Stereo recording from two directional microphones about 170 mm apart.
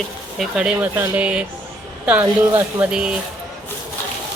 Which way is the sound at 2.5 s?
5° right (ahead or behind).